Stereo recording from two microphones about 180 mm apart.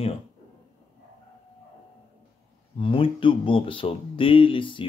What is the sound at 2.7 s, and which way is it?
Speech, 30° left (ahead or behind).